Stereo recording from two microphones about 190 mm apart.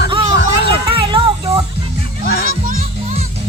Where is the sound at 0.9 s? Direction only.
25° right (ahead or behind).